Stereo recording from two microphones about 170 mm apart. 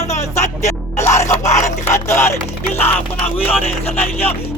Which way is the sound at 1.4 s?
45° left (ahead or behind).